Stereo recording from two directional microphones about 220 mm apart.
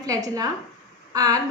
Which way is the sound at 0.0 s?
15° right (ahead or behind).